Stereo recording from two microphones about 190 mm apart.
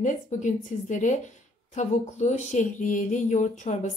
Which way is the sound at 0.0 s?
40° left (ahead or behind).